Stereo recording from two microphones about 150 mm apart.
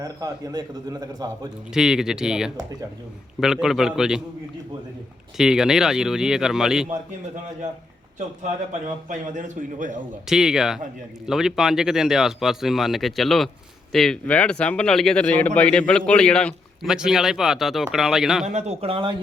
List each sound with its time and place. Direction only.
0.0 s a man's voice: 25° right (ahead or behind)
1.7 s speech: 5° right (ahead or behind)
5.4 s speech: 5° right (ahead or behind)
9.0 s a man's voice: 55° right (ahead or behind)
10.2 s speech: centre (ahead or behind)
16.9 s speech: 5° right (ahead or behind)
18.4 s a man's voice: 50° right (ahead or behind)